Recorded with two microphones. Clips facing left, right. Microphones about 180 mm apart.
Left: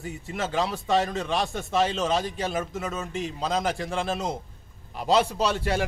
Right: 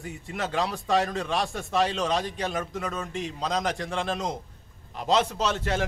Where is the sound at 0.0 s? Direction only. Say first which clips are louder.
Left 1 dB; centre (ahead or behind).